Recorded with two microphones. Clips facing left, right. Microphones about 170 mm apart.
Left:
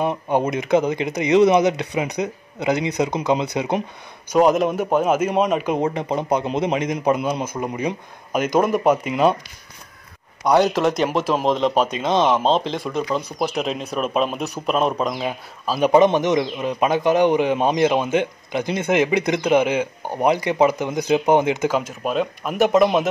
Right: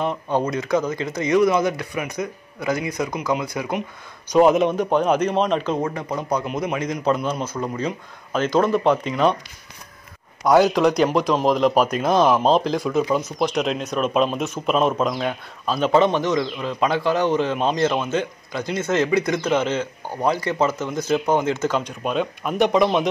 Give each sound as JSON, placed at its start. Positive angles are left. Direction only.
{"t": 0.0, "sound": "speech", "side_deg": 15}
{"t": 4.3, "sound": "a man's voice", "side_deg": 0}
{"t": 10.4, "sound": "a man's voice", "side_deg": 0}
{"t": 15.9, "sound": "a man's voice", "side_deg": 20}